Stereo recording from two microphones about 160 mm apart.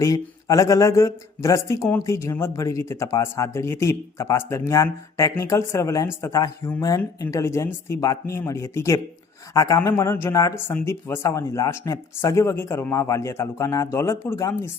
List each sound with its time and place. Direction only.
0.0 s speech: 20° left (ahead or behind)